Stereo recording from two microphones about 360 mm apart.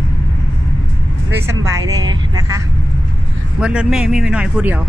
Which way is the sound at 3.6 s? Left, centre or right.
Centre.